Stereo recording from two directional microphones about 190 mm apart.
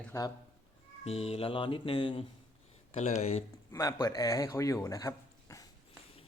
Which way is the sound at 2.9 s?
35° left (ahead or behind).